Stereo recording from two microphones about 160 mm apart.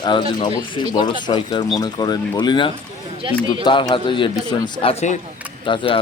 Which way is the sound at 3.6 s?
30° left (ahead or behind).